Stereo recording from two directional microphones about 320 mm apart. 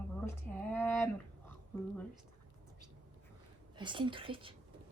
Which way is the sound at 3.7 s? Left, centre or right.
Centre.